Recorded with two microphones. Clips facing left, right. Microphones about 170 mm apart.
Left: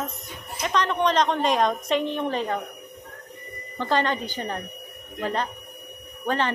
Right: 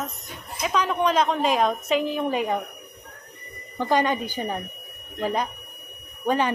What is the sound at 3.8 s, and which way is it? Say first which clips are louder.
Speech: right 2 dB; 10° right (ahead or behind).